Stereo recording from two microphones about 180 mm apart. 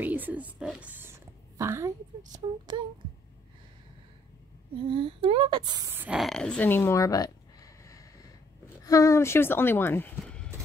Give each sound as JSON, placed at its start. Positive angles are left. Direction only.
{"t": 0.0, "sound": "a woman's voice", "side_deg": -10}
{"t": 4.9, "sound": "speech", "side_deg": -30}
{"t": 5.9, "sound": "a sound", "side_deg": -10}
{"t": 8.8, "sound": "speech", "side_deg": 15}